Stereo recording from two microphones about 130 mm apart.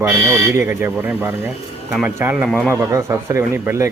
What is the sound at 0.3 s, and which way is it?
Speech, 20° right (ahead or behind).